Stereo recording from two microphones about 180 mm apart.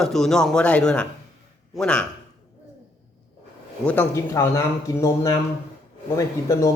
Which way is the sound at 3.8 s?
10° left (ahead or behind).